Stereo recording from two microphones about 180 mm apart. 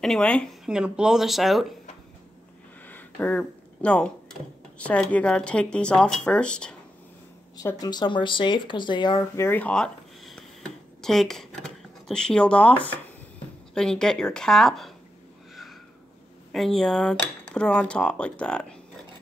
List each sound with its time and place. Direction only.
0.0 s speech: 5° left (ahead or behind)
2.9 s speech: 10° left (ahead or behind)
7.5 s speech: 20° left (ahead or behind)
9.5 s a sound: 5° left (ahead or behind)
13.7 s speech: 5° left (ahead or behind)
16.5 s speech: centre (ahead or behind)